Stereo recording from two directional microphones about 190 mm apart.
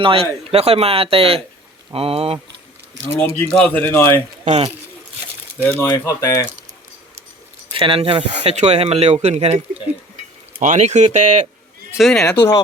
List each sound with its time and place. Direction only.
0.0 s speech: 30° right (ahead or behind)
3.1 s speech: 5° left (ahead or behind)
4.4 s speech: 35° right (ahead or behind)
5.6 s speech: 15° left (ahead or behind)
7.7 s speech: 25° right (ahead or behind)
10.6 s speech: 40° right (ahead or behind)
11.9 s speech: centre (ahead or behind)